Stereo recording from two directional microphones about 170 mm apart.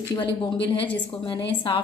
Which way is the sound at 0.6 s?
30° left (ahead or behind).